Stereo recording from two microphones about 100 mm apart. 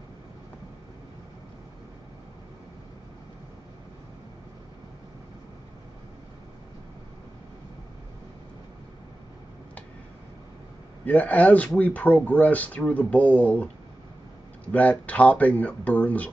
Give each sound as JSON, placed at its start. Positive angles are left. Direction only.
{"t": 11.1, "sound": "speech", "side_deg": 15}
{"t": 14.7, "sound": "speech", "side_deg": 15}